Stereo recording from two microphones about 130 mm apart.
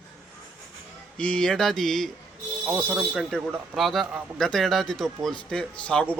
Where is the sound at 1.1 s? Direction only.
10° left (ahead or behind).